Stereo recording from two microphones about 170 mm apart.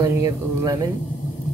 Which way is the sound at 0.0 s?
20° right (ahead or behind).